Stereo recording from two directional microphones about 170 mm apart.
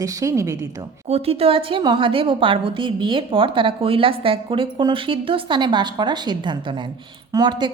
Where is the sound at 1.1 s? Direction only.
35° right (ahead or behind).